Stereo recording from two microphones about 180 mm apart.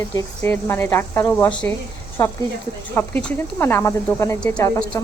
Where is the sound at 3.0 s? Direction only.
10° left (ahead or behind).